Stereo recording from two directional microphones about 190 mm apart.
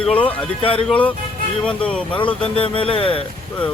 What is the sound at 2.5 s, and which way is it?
Speech, 30° left (ahead or behind).